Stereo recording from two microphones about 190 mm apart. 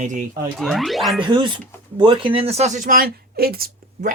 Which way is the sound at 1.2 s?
25° right (ahead or behind).